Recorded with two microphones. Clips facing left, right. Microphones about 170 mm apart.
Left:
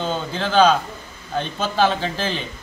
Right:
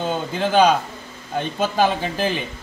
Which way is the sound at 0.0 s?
15° right (ahead or behind).